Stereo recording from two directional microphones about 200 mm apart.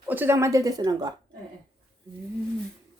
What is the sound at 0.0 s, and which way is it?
A woman's voice, 10° right (ahead or behind).